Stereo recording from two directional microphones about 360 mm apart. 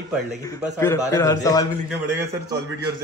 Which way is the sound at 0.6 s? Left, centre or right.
Centre.